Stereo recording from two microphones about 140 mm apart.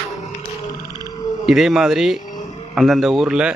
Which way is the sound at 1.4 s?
Centre (ahead or behind).